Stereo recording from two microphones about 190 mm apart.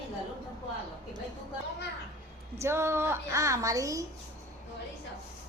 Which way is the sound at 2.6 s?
15° right (ahead or behind).